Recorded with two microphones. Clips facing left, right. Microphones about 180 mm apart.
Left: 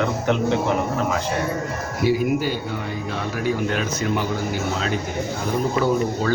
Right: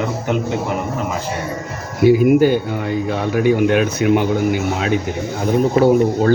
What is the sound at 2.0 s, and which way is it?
Speech, 55° right (ahead or behind).